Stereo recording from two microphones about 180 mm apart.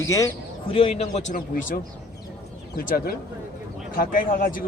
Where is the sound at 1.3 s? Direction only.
50° left (ahead or behind).